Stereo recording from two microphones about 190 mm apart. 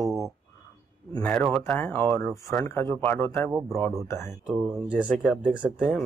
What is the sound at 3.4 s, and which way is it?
Speech, 15° right (ahead or behind).